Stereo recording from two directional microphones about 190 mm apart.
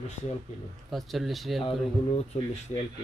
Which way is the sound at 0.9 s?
Centre (ahead or behind).